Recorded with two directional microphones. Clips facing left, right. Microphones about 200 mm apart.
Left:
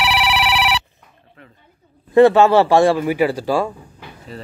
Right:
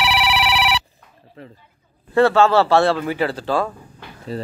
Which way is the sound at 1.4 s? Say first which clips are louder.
Right 7 dB; 30° right (ahead or behind).